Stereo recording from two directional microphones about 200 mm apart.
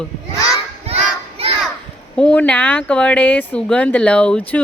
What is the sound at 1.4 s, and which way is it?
Children playing, 30° right (ahead or behind).